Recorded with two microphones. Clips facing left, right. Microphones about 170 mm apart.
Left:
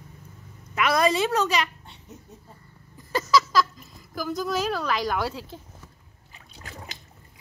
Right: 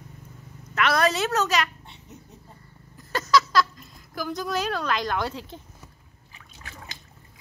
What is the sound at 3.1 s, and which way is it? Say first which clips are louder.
Speech: even; 5° left (ahead or behind).